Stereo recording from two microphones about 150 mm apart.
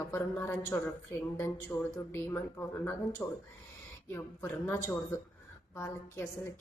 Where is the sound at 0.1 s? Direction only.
15° left (ahead or behind).